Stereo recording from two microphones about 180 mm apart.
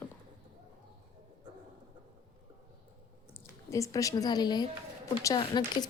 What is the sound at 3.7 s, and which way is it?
Speech, 15° left (ahead or behind).